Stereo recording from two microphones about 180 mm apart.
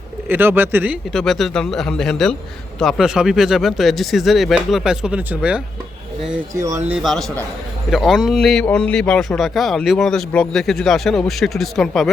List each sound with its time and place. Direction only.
0.3 s speech: 10° right (ahead or behind)
1.1 s speech: centre (ahead or behind)
6.5 s speech: 15° right (ahead or behind)
6.8 s speech: 5° right (ahead or behind)